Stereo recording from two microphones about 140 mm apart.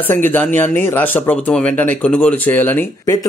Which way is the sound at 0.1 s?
15° left (ahead or behind).